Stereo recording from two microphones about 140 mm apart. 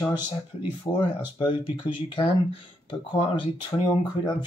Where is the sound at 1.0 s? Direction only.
35° left (ahead or behind).